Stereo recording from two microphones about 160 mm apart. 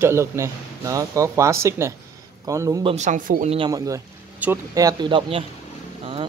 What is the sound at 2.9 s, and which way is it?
Speech, 50° right (ahead or behind).